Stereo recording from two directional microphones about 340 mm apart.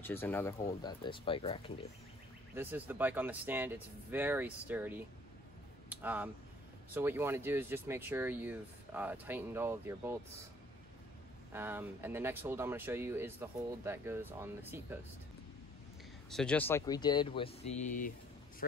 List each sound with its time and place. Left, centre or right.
0.0 s speech: centre
2.5 s speech: centre
11.5 s speech: centre
16.3 s speech: centre; by 18.1 s left